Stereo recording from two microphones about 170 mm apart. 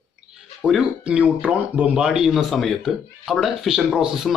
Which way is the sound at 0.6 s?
5° right (ahead or behind).